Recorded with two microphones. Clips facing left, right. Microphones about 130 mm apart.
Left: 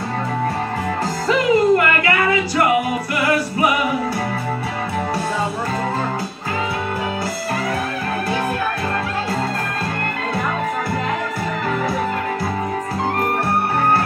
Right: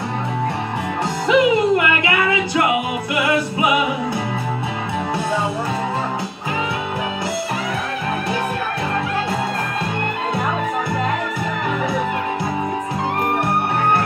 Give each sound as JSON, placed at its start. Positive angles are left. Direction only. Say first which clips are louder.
{"t": 1.2, "sound": "music", "louder": "right 1 dB", "side_deg": -20}